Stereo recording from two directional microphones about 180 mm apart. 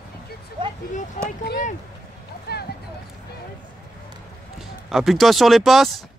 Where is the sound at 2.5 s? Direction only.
60° left (ahead or behind).